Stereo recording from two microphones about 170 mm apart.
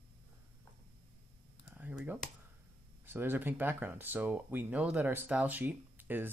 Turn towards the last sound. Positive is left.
turn(degrees=-10)  # may be behind; listen again after turning